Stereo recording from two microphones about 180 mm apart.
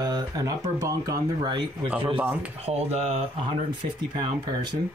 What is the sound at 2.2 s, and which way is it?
Rub, 10° right (ahead or behind).